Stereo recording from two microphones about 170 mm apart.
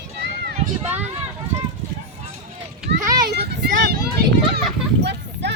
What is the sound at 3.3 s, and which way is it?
Speech, 60° right (ahead or behind).